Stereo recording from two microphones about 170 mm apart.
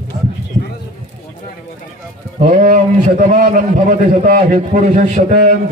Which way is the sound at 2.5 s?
45° right (ahead or behind).